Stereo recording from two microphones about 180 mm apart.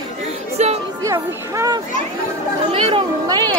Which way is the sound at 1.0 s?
20° right (ahead or behind).